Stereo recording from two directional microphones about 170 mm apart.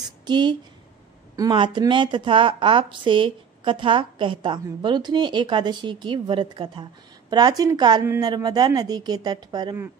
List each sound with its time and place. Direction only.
0.3 s a woman's voice: 25° right (ahead or behind)